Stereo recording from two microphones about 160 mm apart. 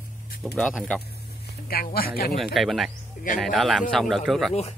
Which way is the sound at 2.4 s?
Centre (ahead or behind).